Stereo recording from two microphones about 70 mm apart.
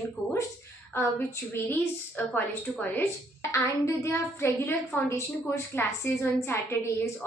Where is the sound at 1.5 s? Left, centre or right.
Left.